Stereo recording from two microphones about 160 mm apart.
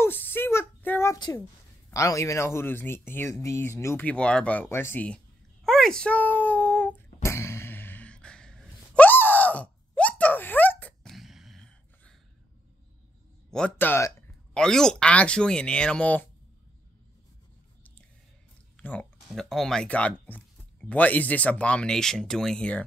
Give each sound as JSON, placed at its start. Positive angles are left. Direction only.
{"t": 0.0, "sound": "a sound", "side_deg": 10}
{"t": 2.0, "sound": "speech", "side_deg": 20}
{"t": 7.2, "sound": "gasp", "side_deg": 15}
{"t": 11.1, "sound": "a sound", "side_deg": 0}
{"t": 13.5, "sound": "speech", "side_deg": 5}
{"t": 14.5, "sound": "speech", "side_deg": 5}
{"t": 18.8, "sound": "speech", "side_deg": 10}